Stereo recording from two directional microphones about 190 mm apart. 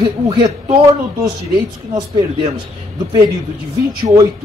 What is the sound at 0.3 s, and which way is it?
Speech, 25° right (ahead or behind).